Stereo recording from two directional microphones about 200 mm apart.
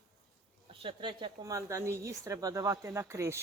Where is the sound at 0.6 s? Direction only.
25° right (ahead or behind).